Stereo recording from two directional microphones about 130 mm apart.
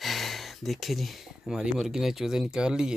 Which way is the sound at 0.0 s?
Centre (ahead or behind).